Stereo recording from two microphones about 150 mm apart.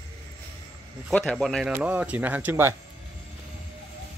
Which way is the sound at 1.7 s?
10° right (ahead or behind).